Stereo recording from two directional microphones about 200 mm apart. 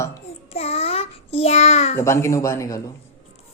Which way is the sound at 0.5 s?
30° left (ahead or behind).